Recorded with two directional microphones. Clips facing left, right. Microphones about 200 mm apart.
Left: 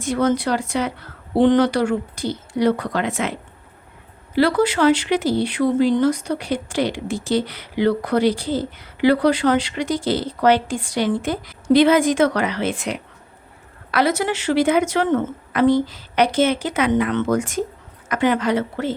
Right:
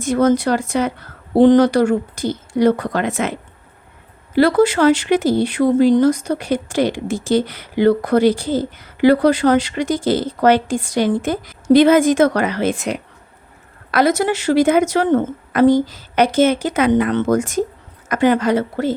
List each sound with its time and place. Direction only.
0.0 s speech: 45° right (ahead or behind)
4.4 s a woman's voice: 45° right (ahead or behind)